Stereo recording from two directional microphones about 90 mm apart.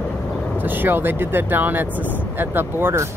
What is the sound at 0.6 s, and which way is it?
Speech, 20° right (ahead or behind).